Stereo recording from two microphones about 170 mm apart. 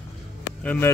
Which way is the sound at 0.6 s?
10° left (ahead or behind).